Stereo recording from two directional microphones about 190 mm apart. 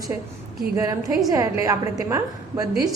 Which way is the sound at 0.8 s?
15° right (ahead or behind).